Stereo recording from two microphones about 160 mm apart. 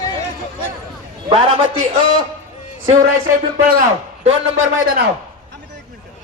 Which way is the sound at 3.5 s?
55° right (ahead or behind).